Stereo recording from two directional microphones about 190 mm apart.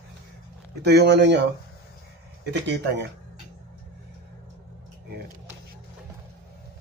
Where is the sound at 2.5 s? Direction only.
65° right (ahead or behind).